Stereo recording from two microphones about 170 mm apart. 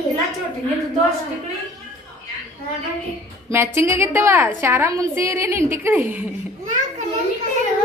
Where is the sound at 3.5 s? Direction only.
15° right (ahead or behind).